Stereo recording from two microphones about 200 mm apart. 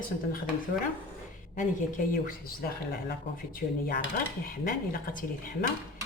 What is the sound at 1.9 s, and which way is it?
Speech, 45° left (ahead or behind).